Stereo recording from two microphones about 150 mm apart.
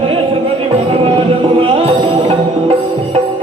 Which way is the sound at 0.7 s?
40° right (ahead or behind).